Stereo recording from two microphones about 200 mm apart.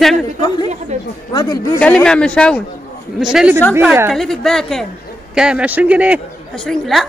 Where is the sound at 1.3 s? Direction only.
20° left (ahead or behind).